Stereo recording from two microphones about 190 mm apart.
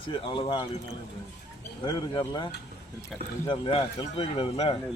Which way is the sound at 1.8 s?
20° left (ahead or behind).